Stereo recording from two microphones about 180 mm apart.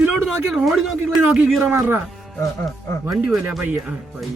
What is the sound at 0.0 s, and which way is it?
A man's voice, 5° right (ahead or behind).